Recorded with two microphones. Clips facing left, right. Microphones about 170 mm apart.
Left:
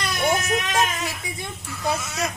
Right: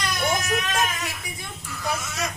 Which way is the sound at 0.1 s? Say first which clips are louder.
Left 3 dB; 30° left (ahead or behind).